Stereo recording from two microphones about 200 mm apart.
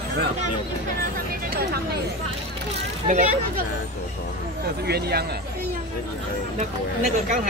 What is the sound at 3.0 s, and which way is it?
Speech, 40° right (ahead or behind).